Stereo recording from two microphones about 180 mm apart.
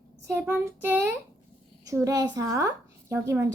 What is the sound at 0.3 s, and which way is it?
A woman's voice, 15° right (ahead or behind).